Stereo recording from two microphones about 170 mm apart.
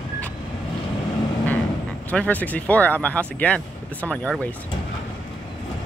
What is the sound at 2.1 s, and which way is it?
Speech, 10° left (ahead or behind).